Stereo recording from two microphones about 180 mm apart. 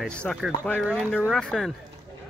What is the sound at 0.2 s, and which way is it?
Speech, centre (ahead or behind).